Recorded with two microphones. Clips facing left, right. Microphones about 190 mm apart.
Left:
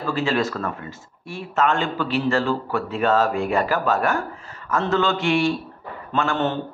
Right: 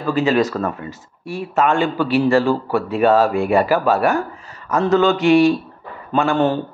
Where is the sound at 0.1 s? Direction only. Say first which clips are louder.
Right 6 dB; 20° right (ahead or behind).